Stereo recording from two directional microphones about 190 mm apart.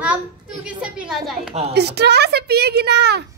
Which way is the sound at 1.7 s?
60° right (ahead or behind).